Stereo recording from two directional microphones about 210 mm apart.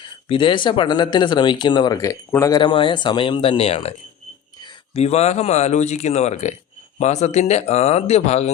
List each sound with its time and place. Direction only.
0.0 s speech: 25° left (ahead or behind)